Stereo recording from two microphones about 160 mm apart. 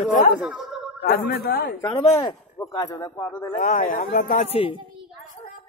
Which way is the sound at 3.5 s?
55° left (ahead or behind).